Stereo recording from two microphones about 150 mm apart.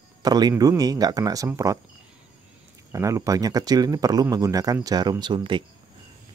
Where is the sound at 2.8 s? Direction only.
20° right (ahead or behind).